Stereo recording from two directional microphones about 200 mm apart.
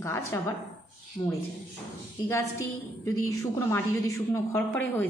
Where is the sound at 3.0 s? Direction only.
15° left (ahead or behind).